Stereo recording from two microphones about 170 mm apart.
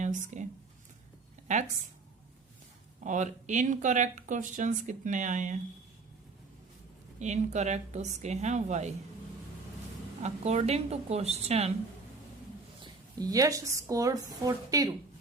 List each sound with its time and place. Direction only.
0.0 s speech: 45° right (ahead or behind)
1.5 s speech: 45° right (ahead or behind)
3.0 s speech: 45° right (ahead or behind)
7.2 s speech: 45° right (ahead or behind)
10.2 s speech: 40° right (ahead or behind)
12.8 s a woman's voice: 20° right (ahead or behind)